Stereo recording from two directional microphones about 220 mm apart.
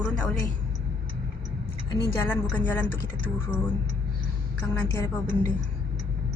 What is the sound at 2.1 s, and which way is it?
A woman's voice, 10° left (ahead or behind).